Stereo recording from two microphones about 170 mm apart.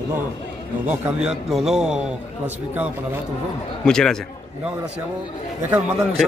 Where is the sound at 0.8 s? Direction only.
5° right (ahead or behind).